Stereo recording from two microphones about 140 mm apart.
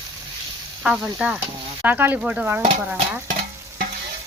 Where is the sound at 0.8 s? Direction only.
5° right (ahead or behind).